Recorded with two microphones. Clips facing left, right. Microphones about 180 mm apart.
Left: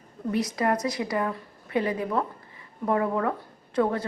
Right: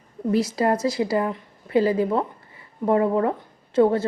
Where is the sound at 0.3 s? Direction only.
30° right (ahead or behind).